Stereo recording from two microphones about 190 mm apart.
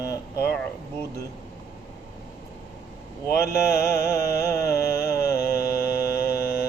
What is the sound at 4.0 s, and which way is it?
Music, 15° left (ahead or behind).